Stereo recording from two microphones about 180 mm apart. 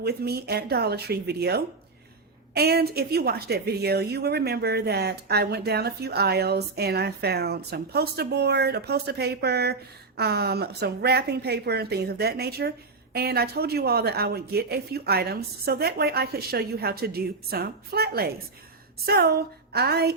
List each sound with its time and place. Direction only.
0.0 s a woman's voice: 65° right (ahead or behind)